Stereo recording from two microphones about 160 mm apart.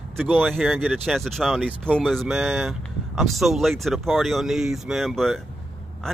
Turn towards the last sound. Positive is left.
turn(degrees=0)  # may be behind; listen again after turning